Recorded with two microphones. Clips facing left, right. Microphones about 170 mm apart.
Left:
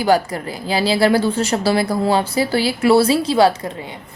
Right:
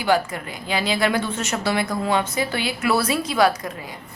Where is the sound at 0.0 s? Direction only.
40° left (ahead or behind).